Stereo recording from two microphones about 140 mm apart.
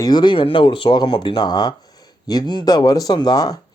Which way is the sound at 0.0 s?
30° left (ahead or behind).